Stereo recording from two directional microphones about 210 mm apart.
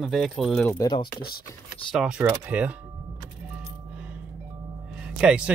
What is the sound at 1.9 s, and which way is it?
Speech, 5° right (ahead or behind).